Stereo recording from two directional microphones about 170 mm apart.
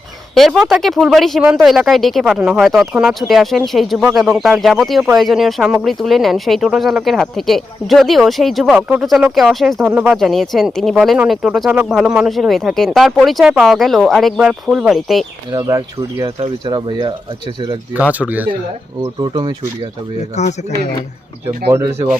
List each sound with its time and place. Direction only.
0.3 s speech: centre (ahead or behind)
15.5 s speech: 20° right (ahead or behind)
16.4 s speech: 30° right (ahead or behind)
18.1 s speech: 10° right (ahead or behind)
19.2 s speech: 30° right (ahead or behind)
20.3 s speech: 40° left (ahead or behind)
21.7 s speech: 15° right (ahead or behind)